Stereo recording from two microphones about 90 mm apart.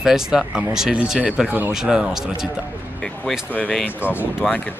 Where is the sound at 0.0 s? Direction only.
5° right (ahead or behind).